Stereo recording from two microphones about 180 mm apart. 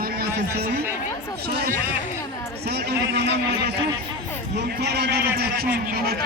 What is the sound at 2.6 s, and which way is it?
A man's voice, 65° right (ahead or behind).